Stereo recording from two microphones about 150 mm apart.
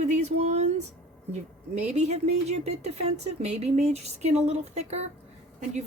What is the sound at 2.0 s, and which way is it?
Speech, 45° right (ahead or behind).